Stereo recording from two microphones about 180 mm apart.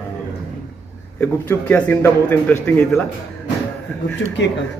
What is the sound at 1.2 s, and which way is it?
A man's voice, 10° left (ahead or behind).